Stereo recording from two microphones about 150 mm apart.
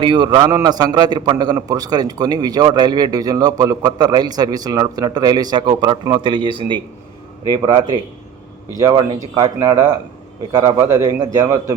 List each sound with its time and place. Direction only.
0.0 s a man's voice: 35° right (ahead or behind)